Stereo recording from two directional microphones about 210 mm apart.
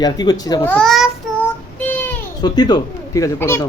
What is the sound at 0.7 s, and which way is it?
Child singing, centre (ahead or behind).